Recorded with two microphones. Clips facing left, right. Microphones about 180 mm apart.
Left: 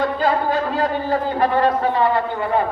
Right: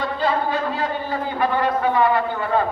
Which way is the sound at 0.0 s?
45° left (ahead or behind).